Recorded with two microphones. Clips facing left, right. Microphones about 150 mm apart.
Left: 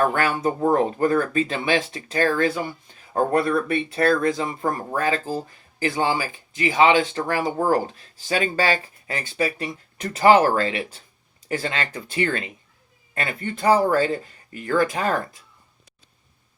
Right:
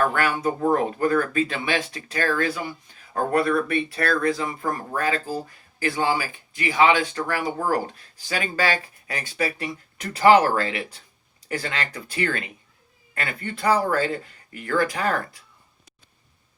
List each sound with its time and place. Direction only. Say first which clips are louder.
0.0 s speech: left 1 dB; 25° left (ahead or behind)